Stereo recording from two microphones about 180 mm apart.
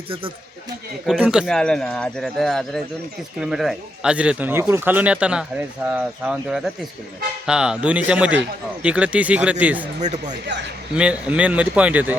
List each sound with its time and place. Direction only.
1.2 s speech: 5° right (ahead or behind)
10.0 s speech: 40° right (ahead or behind)
10.9 s speech: 5° right (ahead or behind)